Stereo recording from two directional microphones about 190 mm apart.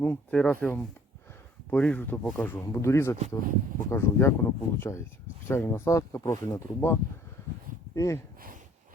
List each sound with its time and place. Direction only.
0.0 s speech: 10° left (ahead or behind)